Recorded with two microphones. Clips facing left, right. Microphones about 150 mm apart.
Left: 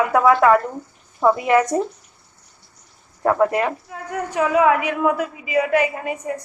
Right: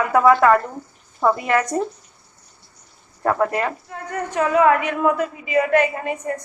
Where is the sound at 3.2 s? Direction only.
10° left (ahead or behind).